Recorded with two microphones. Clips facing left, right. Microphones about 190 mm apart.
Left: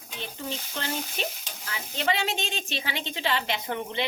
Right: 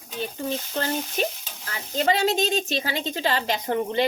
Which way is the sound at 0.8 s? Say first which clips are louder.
Right 6 dB; 45° right (ahead or behind).